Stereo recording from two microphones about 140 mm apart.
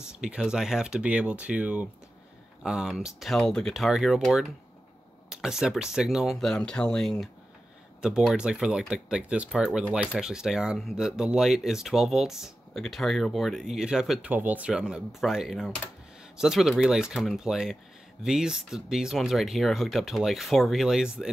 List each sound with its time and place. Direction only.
0.0 s speech: 5° right (ahead or behind)